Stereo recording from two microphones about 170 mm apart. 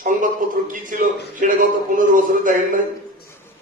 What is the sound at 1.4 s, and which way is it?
A man's voice, 50° right (ahead or behind).